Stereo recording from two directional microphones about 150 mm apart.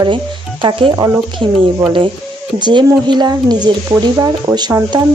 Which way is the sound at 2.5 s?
30° right (ahead or behind).